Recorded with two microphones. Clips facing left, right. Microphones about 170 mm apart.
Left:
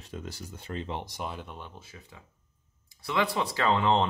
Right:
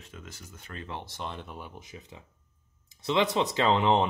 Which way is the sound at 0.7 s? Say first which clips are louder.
Left 3 dB; 20° left (ahead or behind).